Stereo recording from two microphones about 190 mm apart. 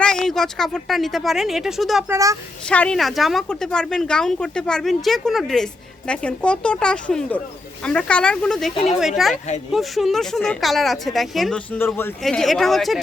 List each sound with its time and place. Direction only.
0.0 s speech: 5° left (ahead or behind)
2.0 s speech: 15° right (ahead or behind)
2.6 s speech: 5° left (ahead or behind)
8.7 s speech: 35° left (ahead or behind)
9.0 s speech: centre (ahead or behind)